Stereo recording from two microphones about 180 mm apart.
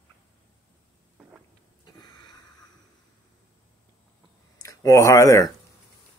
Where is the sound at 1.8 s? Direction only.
20° left (ahead or behind).